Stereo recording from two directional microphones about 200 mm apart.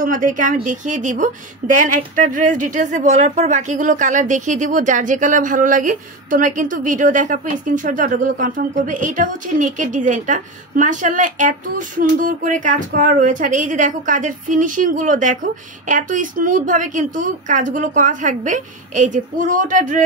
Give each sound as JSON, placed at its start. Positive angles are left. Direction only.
{"t": 0.0, "sound": "a woman's voice", "side_deg": -40}